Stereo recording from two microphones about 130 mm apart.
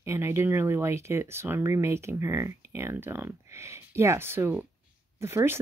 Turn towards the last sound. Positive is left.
turn(degrees=-20)  # may be behind; listen again after turning